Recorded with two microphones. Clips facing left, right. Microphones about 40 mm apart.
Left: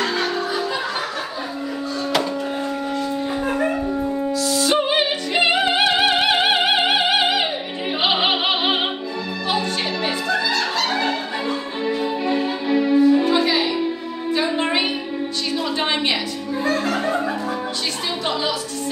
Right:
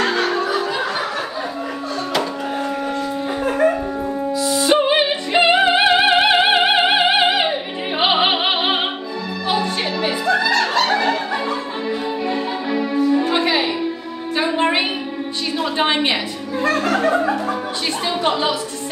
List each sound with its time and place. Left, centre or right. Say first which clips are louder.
0.0 s music: right 3 dB; right
4.0 s music: right 1 dB; centre
9.5 s music: right 2 dB; centre
10.5 s music: right 4 dB; right
12.6 s music: left 4 dB; centre
13.3 s music: even; right
15.8 s a sound: right 5 dB; centre